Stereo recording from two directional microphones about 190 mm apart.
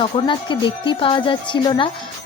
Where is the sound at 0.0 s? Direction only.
25° left (ahead or behind).